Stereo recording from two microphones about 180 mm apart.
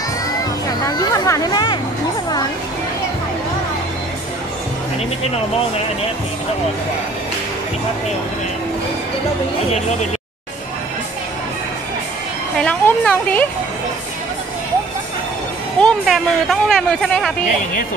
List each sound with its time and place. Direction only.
0.8 s speech: 20° left (ahead or behind)
12.5 s a woman's voice: 5° left (ahead or behind)
15.8 s speech: centre (ahead or behind)